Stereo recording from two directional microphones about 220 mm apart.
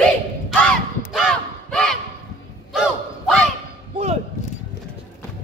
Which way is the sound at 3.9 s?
30° right (ahead or behind).